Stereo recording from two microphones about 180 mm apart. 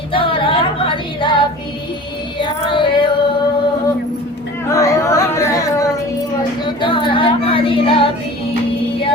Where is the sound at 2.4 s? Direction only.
25° left (ahead or behind).